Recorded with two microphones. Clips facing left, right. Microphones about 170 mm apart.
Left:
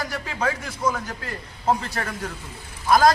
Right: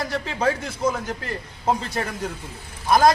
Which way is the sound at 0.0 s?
25° right (ahead or behind).